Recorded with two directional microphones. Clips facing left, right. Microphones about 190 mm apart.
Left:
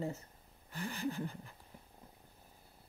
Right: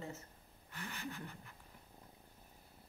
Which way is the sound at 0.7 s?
35° left (ahead or behind).